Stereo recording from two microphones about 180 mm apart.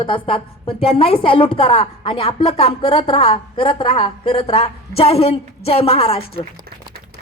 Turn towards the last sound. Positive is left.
turn(degrees=35)  # may be behind; listen again after turning